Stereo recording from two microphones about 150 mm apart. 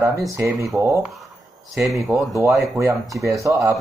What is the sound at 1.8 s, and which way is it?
Speech, centre (ahead or behind).